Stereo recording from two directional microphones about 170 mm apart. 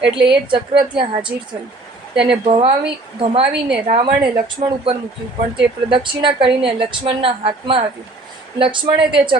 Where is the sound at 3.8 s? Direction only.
35° right (ahead or behind).